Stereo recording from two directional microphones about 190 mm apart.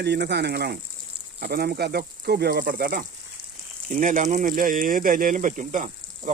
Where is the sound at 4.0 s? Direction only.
40° right (ahead or behind).